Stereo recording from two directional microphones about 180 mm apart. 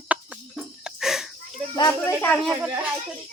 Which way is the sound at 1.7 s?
20° left (ahead or behind).